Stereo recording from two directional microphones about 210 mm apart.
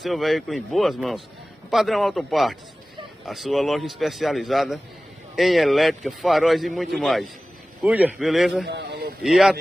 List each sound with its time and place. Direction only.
0.0 s a man's voice: centre (ahead or behind)
8.6 s a sound: 50° right (ahead or behind)
9.2 s a man's voice: centre (ahead or behind)